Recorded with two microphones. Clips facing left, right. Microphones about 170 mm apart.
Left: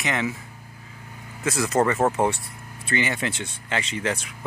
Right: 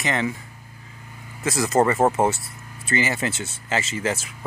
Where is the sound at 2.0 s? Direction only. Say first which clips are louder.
Right 2 dB; 15° right (ahead or behind).